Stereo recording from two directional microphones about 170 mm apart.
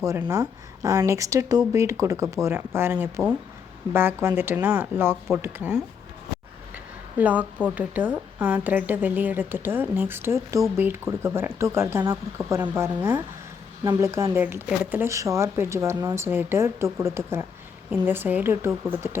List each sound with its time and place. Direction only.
0.0 s a woman's voice: 20° right (ahead or behind)
7.2 s a woman's voice: 10° right (ahead or behind)